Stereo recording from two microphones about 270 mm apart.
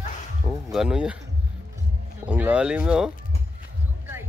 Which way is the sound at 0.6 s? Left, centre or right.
Centre.